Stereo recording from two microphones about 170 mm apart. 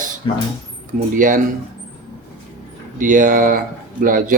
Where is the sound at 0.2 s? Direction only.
25° left (ahead or behind).